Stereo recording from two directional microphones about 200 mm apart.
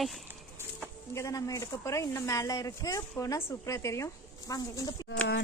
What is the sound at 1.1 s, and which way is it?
Speech, 15° left (ahead or behind).